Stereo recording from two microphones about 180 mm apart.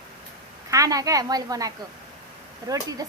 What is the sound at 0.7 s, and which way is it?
A woman's voice, 20° right (ahead or behind).